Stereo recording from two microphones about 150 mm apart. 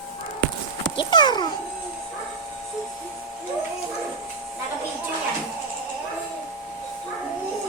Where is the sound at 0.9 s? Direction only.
30° left (ahead or behind).